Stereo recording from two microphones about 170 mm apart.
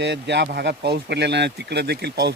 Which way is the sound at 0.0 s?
85° right.